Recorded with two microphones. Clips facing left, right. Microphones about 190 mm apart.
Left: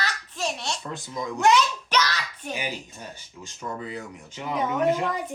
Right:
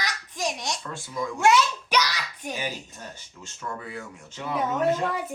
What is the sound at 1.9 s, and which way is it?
Hands, 10° right (ahead or behind).